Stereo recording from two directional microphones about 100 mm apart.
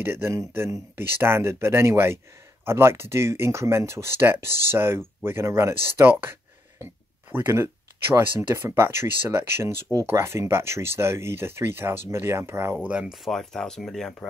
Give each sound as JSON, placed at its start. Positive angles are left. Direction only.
{"t": 0.0, "sound": "speech", "side_deg": -25}
{"t": 12.8, "sound": "speech", "side_deg": -10}